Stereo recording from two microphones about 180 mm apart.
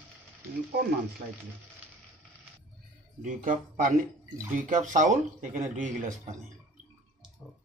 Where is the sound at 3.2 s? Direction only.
45° right (ahead or behind).